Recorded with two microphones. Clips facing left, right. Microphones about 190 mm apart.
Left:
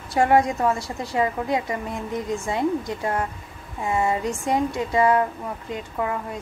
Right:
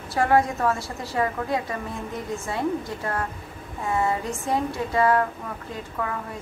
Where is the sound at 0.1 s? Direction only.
20° left (ahead or behind).